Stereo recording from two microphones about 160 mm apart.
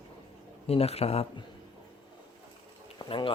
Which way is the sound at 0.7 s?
40° left (ahead or behind).